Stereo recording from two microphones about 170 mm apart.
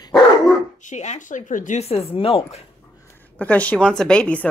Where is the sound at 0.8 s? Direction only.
45° left (ahead or behind).